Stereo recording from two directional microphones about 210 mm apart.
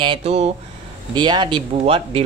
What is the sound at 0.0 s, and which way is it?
Speech, 25° right (ahead or behind).